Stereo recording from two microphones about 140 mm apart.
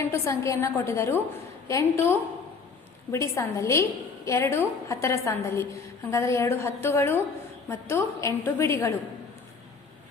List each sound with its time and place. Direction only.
0.0 s a woman's voice: 20° left (ahead or behind)